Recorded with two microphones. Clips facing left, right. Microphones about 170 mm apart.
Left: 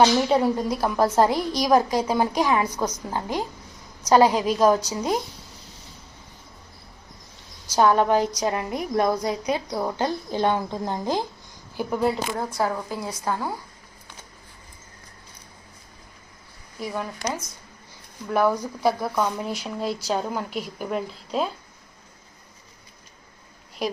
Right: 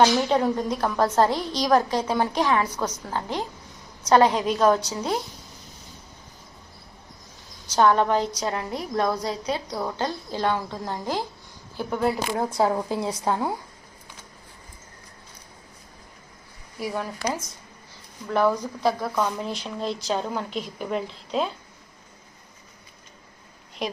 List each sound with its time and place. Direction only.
0.0 s a woman's voice: 5° left (ahead or behind)
7.9 s a woman's voice: 15° left (ahead or behind)
11.9 s speech: centre (ahead or behind)
12.4 s a woman's voice: 20° right (ahead or behind)
16.8 s speech: centre (ahead or behind)
18.3 s a woman's voice: 10° left (ahead or behind)
23.8 s speech: 5° left (ahead or behind)